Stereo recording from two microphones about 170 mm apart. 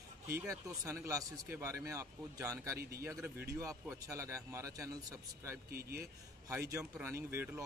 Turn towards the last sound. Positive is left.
turn(degrees=-15)  # may be behind; listen again after turning